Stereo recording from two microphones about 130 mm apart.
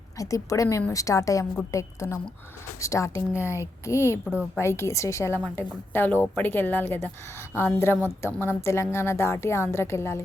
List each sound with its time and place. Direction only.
0.2 s a woman's voice: 25° left (ahead or behind)